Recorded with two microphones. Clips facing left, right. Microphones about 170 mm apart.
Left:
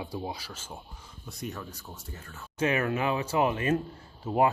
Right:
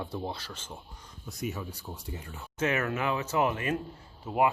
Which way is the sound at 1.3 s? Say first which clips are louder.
Right 2 dB; 5° right (ahead or behind).